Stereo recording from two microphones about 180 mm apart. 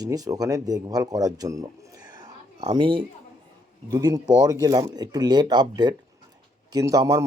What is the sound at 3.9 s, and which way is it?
Speech, 20° right (ahead or behind).